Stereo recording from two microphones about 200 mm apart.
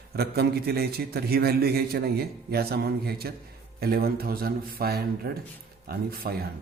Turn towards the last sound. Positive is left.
turn(degrees=-50)  # may be behind; listen again after turning